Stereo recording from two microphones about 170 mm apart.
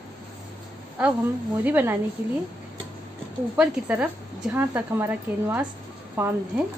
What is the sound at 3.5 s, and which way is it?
A woman's voice, 5° right (ahead or behind).